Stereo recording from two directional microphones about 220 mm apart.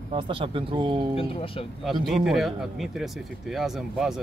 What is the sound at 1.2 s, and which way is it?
Speech, 25° left (ahead or behind).